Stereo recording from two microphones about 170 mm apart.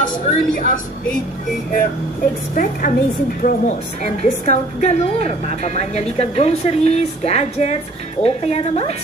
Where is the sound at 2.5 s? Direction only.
55° left (ahead or behind).